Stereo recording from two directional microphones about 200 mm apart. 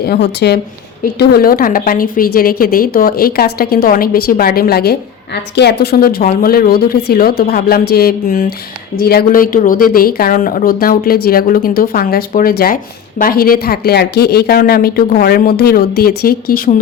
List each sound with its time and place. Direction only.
0.0 s speech: 55° left (ahead or behind)